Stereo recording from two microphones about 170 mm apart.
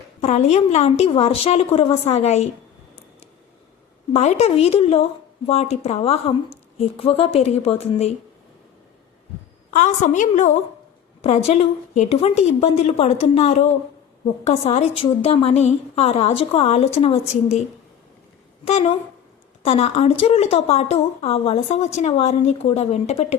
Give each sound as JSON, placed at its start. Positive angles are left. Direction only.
{"t": 0.2, "sound": "speech", "side_deg": 40}
{"t": 4.1, "sound": "speech", "side_deg": 40}
{"t": 9.7, "sound": "a woman's voice", "side_deg": 50}
{"t": 18.6, "sound": "speech", "side_deg": 35}